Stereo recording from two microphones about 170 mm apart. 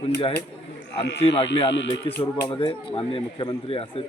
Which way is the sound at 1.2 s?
30° left (ahead or behind).